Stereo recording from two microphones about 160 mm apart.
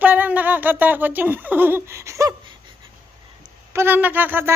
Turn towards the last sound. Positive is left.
turn(degrees=-10)  # may be behind; listen again after turning